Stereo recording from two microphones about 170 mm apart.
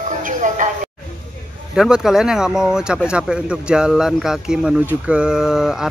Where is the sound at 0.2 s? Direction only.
50° right (ahead or behind).